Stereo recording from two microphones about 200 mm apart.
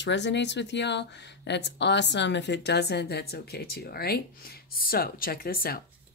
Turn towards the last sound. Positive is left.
turn(degrees=50)  # may be behind; listen again after turning